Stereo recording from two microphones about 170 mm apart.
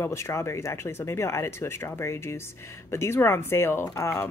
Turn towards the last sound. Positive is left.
turn(degrees=15)  # may be behind; listen again after turning